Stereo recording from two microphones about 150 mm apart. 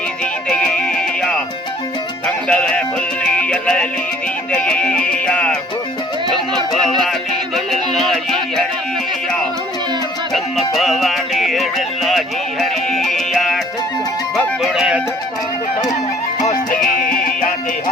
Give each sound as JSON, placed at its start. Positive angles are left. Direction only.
{"t": 0.4, "sound": "music", "side_deg": 5}
{"t": 6.8, "sound": "music", "side_deg": 0}
{"t": 10.3, "sound": "music", "side_deg": 0}
{"t": 14.3, "sound": "speech", "side_deg": -5}
{"t": 16.8, "sound": "music", "side_deg": 60}